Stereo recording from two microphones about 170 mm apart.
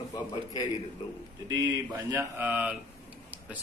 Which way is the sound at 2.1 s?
15° right (ahead or behind).